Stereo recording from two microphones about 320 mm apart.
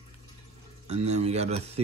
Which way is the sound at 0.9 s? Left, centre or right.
Centre.